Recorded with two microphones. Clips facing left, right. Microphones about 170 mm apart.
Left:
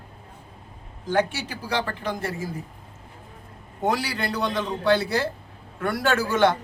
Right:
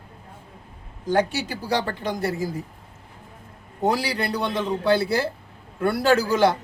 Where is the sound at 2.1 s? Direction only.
35° right (ahead or behind).